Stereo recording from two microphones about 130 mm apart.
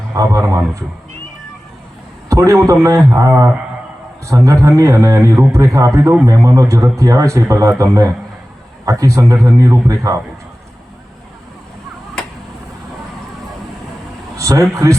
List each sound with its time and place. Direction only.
0.1 s a man's voice: 25° right (ahead or behind)
2.3 s a man's voice: 25° right (ahead or behind)
14.3 s speech: 25° right (ahead or behind)